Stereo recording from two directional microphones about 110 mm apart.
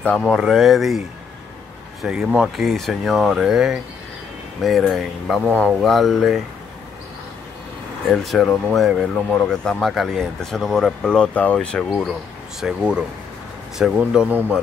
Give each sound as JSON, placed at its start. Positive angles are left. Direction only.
{"t": 0.0, "sound": "speech", "side_deg": 10}
{"t": 0.4, "sound": "speech", "side_deg": 0}
{"t": 8.1, "sound": "speech", "side_deg": 0}